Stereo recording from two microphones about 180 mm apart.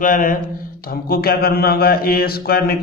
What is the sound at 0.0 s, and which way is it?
Speech, 50° left (ahead or behind).